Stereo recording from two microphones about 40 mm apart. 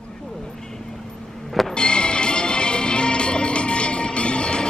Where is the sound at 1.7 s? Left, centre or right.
Left.